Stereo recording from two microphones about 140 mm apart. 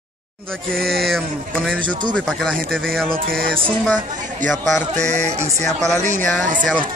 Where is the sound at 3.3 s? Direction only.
90° right.